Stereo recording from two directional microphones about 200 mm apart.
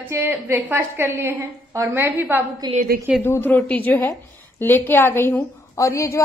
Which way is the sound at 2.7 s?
45° right (ahead or behind).